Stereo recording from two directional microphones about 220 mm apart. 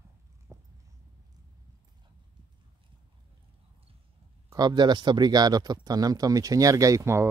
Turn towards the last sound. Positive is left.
turn(degrees=-15)  # may be behind; listen again after turning